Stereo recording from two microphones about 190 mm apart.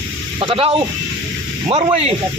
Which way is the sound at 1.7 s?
30° right (ahead or behind).